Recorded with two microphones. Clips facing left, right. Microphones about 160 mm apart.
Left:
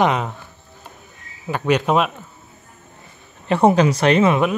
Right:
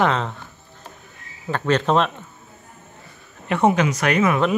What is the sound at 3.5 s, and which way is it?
Speech, 35° left (ahead or behind).